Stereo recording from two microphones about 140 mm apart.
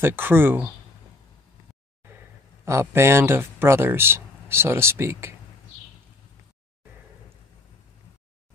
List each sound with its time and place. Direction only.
0.0 s speech: 15° right (ahead or behind)
2.6 s speech: 20° right (ahead or behind)